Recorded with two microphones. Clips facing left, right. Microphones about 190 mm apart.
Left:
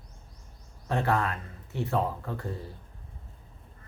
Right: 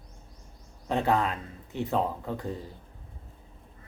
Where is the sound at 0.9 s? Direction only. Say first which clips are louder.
Right 2 dB; 15° right (ahead or behind).